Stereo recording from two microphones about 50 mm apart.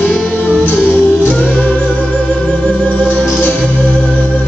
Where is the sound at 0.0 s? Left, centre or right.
Left.